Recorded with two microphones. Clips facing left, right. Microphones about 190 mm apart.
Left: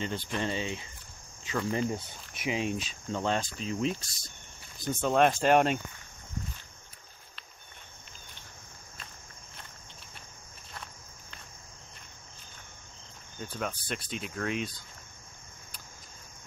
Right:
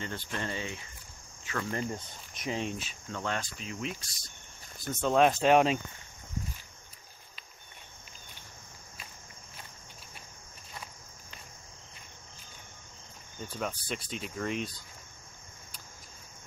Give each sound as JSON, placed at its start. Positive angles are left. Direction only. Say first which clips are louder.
{"t": 0.0, "sound": "speech", "louder": "left 4 dB", "side_deg": 20}
{"t": 1.6, "sound": "speech", "louder": "left 4 dB", "side_deg": 5}
{"t": 3.1, "sound": "speech", "louder": "left 5 dB", "side_deg": 25}
{"t": 4.8, "sound": "speech", "louder": "even", "side_deg": 10}
{"t": 10.7, "sound": "cricket", "louder": "even", "side_deg": -5}
{"t": 13.4, "sound": "speech", "louder": "even", "side_deg": 0}